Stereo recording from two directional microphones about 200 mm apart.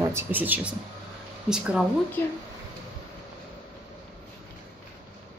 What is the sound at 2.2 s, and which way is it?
Speech, 10° left (ahead or behind).